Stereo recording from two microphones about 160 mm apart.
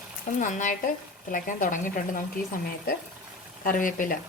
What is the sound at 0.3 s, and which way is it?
Speech, 50° left (ahead or behind).